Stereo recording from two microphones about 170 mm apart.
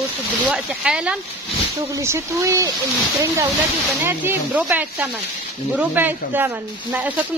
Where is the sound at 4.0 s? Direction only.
10° right (ahead or behind).